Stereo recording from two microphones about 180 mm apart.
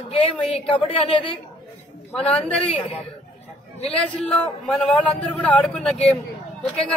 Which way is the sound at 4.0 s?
5° left (ahead or behind).